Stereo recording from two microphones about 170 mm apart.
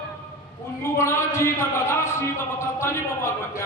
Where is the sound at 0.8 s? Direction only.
15° left (ahead or behind).